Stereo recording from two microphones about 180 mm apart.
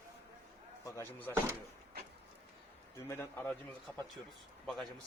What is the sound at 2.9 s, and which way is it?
Speech, 15° left (ahead or behind).